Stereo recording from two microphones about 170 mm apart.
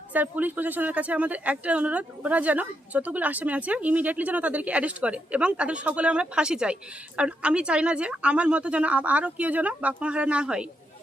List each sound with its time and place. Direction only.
0.1 s a woman's voice: 10° right (ahead or behind)